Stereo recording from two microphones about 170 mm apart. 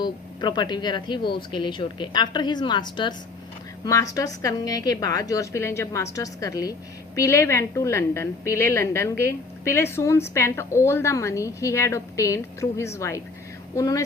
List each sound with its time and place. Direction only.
0.0 s a woman's voice: 25° left (ahead or behind)